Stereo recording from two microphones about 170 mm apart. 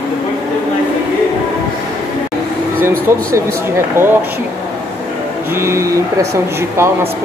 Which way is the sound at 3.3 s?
15° right (ahead or behind).